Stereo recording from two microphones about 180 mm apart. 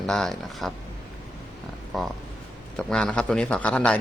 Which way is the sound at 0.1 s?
Centre (ahead or behind).